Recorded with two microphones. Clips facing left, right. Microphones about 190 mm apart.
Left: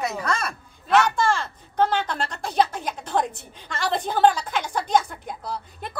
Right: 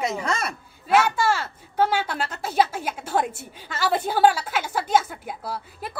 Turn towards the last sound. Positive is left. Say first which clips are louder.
# even
turn(degrees=-5)  # may be behind; listen again after turning